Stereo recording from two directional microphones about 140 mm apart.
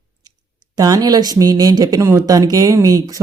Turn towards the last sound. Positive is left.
turn(degrees=-25)  # may be behind; listen again after turning